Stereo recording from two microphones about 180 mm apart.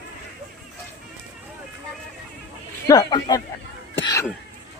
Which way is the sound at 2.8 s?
20° left (ahead or behind).